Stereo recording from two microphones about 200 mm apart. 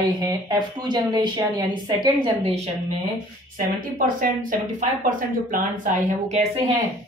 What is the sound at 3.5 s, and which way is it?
Speech, 45° right (ahead or behind).